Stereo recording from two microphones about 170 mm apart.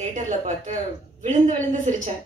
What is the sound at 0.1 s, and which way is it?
Speech, 45° right (ahead or behind).